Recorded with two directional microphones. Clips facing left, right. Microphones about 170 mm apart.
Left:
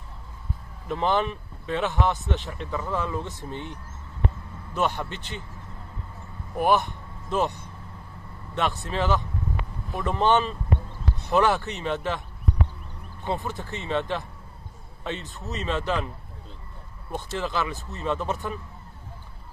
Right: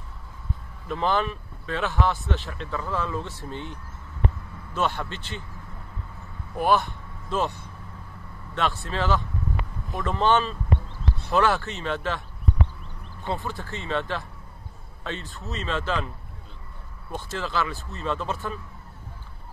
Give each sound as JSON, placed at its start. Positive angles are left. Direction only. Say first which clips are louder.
{"t": 0.8, "sound": "speech", "louder": "left 1 dB", "side_deg": 20}
{"t": 6.5, "sound": "speech", "louder": "even", "side_deg": 20}
{"t": 13.5, "sound": "speech", "louder": "left 1 dB", "side_deg": 20}
{"t": 17.1, "sound": "speech", "louder": "left 1 dB", "side_deg": 20}